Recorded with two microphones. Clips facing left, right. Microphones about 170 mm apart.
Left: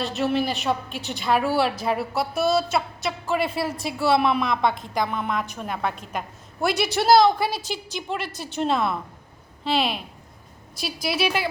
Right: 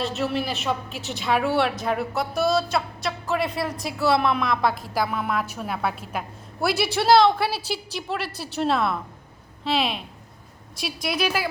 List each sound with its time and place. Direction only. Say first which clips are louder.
0.0 s a woman's voice: left 2 dB; centre (ahead or behind)
8.3 s a woman's voice: even; 30° right (ahead or behind)
8.5 s a woman's voice: even; centre (ahead or behind)